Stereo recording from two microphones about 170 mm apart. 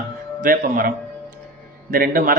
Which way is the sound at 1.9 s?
60° right (ahead or behind).